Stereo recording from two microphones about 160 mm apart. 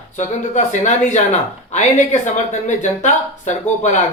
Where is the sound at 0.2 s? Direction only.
50° left (ahead or behind).